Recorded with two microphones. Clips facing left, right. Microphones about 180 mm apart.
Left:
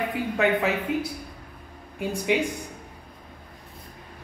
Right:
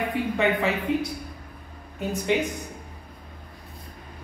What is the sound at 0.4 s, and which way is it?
Speech, centre (ahead or behind).